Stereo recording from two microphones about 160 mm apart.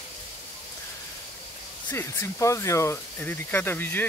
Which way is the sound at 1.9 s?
15° left (ahead or behind).